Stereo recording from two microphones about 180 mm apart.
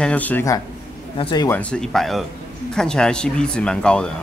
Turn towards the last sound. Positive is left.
turn(degrees=5)  # may be behind; listen again after turning